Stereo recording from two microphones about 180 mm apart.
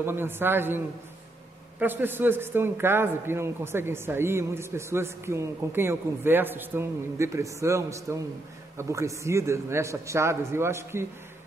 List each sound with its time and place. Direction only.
0.0 s a man's voice: 10° right (ahead or behind)